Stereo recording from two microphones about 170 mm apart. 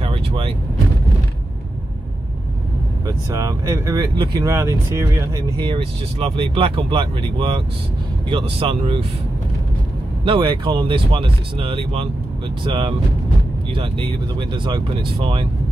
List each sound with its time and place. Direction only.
0.0 s vehicle: 30° right (ahead or behind)
3.1 s speech: 20° right (ahead or behind)
5.7 s speech: 35° right (ahead or behind)
10.2 s speech: 30° right (ahead or behind)